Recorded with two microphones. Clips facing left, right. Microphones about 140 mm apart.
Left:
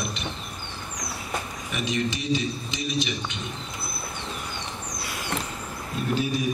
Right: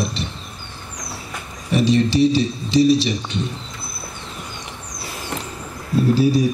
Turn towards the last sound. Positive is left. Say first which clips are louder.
# right 10 dB
turn(degrees=-35)  # may be behind; listen again after turning